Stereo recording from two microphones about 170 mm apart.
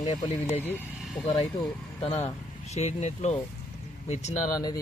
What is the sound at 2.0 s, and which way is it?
Speech, 35° left (ahead or behind).